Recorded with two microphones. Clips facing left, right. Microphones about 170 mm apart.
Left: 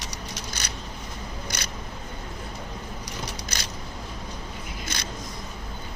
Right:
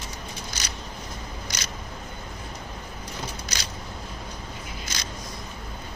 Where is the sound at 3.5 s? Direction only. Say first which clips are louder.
Even; 55° left (ahead or behind).